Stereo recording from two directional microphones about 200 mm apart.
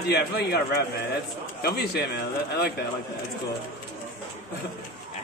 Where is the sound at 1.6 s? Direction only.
55° left (ahead or behind).